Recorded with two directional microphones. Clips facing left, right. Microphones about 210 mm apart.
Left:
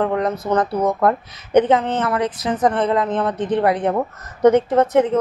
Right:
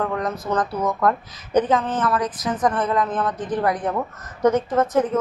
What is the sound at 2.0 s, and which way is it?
A woman's voice, 25° left (ahead or behind).